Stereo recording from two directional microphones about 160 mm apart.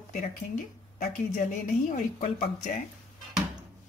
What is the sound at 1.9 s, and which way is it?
Speech, 50° left (ahead or behind).